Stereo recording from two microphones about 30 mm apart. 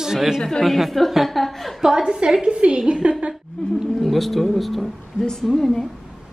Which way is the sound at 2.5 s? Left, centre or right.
Right.